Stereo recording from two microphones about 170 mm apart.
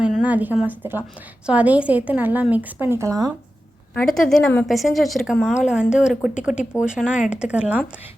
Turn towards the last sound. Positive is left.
turn(degrees=-5)  # may be behind; listen again after turning